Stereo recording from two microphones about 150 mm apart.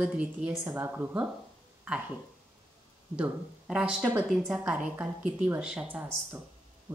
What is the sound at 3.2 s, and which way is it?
Speech, 5° right (ahead or behind).